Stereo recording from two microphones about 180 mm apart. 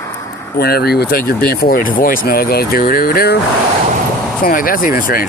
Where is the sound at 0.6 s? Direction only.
60° left (ahead or behind).